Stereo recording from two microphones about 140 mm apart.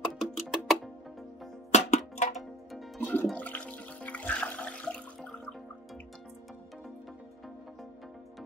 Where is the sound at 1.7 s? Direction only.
55° left (ahead or behind).